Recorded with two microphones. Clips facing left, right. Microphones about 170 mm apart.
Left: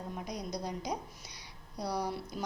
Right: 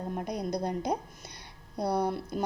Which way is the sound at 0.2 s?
55° right (ahead or behind).